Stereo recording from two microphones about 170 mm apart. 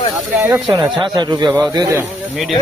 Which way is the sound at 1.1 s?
25° right (ahead or behind).